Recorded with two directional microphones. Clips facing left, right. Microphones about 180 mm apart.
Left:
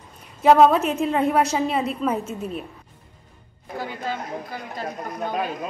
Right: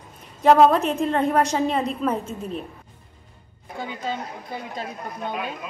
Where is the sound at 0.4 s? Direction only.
Centre (ahead or behind).